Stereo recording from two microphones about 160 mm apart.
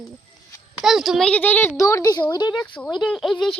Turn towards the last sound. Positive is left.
turn(degrees=5)  # may be behind; listen again after turning